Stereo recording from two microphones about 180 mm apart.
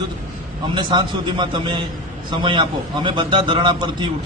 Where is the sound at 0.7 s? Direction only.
25° right (ahead or behind).